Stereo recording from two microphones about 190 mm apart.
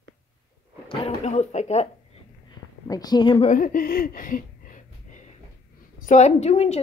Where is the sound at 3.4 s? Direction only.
45° left (ahead or behind).